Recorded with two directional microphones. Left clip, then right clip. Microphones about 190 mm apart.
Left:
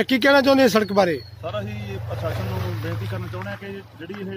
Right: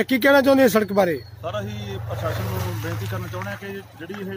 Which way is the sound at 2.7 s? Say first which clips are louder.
Even; 50° right (ahead or behind).